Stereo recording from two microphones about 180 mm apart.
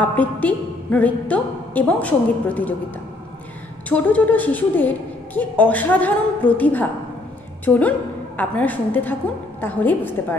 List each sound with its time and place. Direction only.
0.0 s a woman's voice: 10° left (ahead or behind)
3.9 s a woman's voice: 10° left (ahead or behind)